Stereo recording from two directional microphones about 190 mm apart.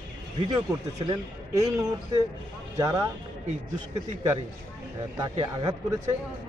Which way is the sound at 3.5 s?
40° right (ahead or behind).